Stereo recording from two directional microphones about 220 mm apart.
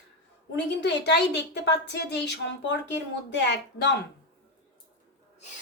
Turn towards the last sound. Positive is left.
turn(degrees=50)  # may be behind; listen again after turning